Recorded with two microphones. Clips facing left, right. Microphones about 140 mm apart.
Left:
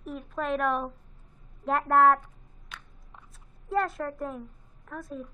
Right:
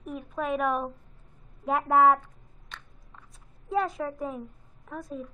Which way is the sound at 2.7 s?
Centre (ahead or behind).